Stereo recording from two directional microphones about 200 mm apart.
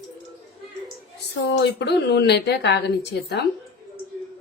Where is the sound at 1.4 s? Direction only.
60° left (ahead or behind).